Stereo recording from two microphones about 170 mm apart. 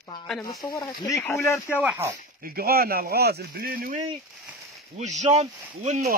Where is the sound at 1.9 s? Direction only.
20° right (ahead or behind).